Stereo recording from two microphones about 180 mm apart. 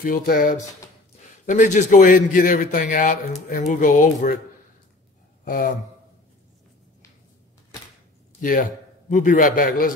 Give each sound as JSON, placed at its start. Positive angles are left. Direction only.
{"t": 0.0, "sound": "a man's voice", "side_deg": 50}
{"t": 5.4, "sound": "a sound", "side_deg": 50}
{"t": 8.4, "sound": "a man's voice", "side_deg": 50}